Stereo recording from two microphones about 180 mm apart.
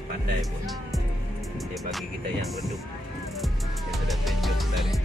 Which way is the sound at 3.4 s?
Centre (ahead or behind).